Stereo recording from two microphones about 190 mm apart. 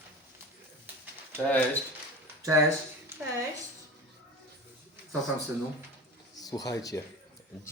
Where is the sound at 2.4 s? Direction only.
15° right (ahead or behind).